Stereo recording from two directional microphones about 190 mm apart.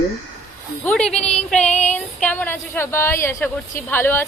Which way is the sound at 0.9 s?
5° left (ahead or behind).